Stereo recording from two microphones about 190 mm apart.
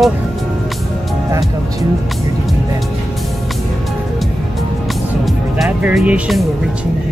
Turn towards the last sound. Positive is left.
turn(degrees=-5)  # may be behind; listen again after turning